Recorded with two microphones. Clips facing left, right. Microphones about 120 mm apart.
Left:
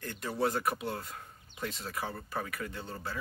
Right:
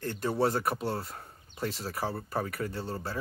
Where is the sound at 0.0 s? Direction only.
35° right (ahead or behind).